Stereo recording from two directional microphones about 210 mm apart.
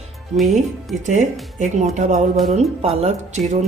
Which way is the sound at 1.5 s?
35° right (ahead or behind).